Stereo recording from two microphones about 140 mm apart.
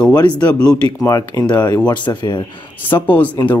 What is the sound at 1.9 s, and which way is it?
Speech, 35° left (ahead or behind).